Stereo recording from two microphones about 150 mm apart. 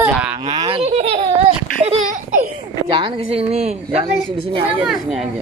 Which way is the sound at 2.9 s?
40° right (ahead or behind).